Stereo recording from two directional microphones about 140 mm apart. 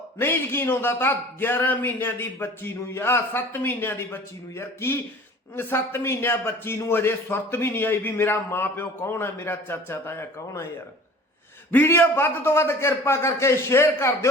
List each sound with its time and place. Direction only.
0.2 s a man's voice: 15° left (ahead or behind)
11.7 s a man's voice: 15° left (ahead or behind)